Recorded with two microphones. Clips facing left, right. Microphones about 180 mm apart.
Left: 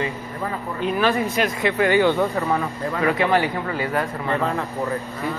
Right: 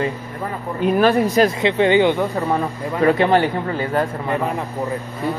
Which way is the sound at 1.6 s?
25° right (ahead or behind).